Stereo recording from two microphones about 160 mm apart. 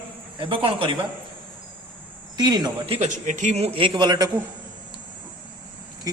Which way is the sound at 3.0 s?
50° right (ahead or behind).